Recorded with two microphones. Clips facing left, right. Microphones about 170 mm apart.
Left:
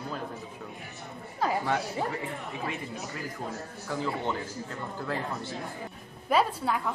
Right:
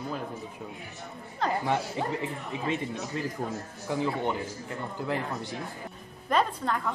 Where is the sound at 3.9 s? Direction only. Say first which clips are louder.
Right 3 dB; 15° right (ahead or behind).